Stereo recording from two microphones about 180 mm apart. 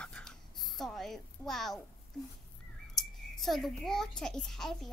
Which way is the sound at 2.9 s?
Centre (ahead or behind).